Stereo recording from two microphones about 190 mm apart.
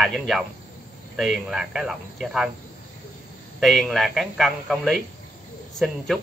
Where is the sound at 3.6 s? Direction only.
Centre (ahead or behind).